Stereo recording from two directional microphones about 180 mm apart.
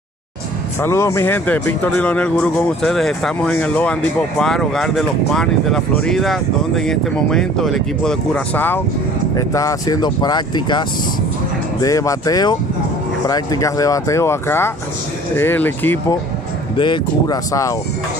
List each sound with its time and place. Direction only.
0.8 s speech: 15° left (ahead or behind)
11.8 s speech: 20° left (ahead or behind)
16.7 s speech: 25° left (ahead or behind)